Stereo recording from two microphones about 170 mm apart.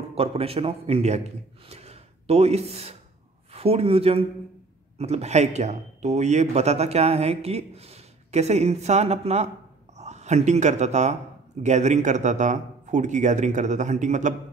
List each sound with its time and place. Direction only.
0.1 s a man's voice: 35° right (ahead or behind)